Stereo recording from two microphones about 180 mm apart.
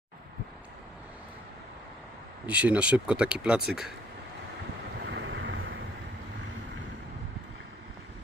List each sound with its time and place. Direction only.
2.5 s speech: 5° right (ahead or behind)
5.0 s wind noise: 85° right